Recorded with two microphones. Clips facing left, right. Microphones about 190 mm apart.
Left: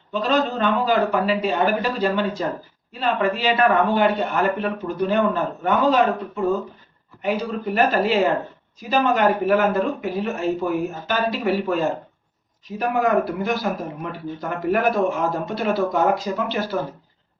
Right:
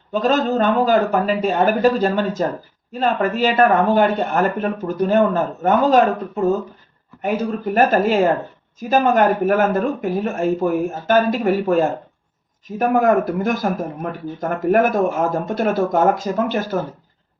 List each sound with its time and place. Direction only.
0.1 s speech: 45° right (ahead or behind)